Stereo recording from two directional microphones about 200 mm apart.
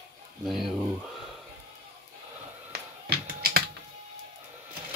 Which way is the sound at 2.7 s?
50° right (ahead or behind).